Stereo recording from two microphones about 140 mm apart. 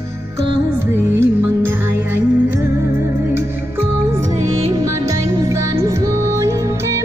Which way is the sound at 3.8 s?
15° right (ahead or behind).